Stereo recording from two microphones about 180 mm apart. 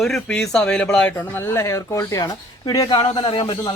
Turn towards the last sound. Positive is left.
turn(degrees=25)  # may be behind; listen again after turning